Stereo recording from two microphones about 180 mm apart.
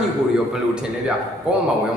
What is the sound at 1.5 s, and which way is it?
Speech, 5° right (ahead or behind).